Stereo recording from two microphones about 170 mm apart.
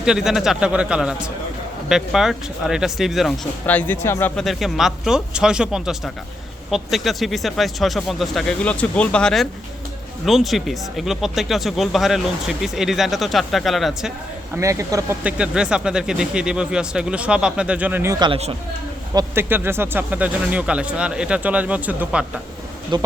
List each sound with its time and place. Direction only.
0.0 s speech: 5° right (ahead or behind)
3.7 s speech: 10° left (ahead or behind)
4.4 s speech: centre (ahead or behind)
14.5 s speech: 15° right (ahead or behind)
15.2 s speech: 5° right (ahead or behind)
18.2 s speech: 35° right (ahead or behind)
19.1 s speech: 15° right (ahead or behind)
22.9 s speech: 25° right (ahead or behind)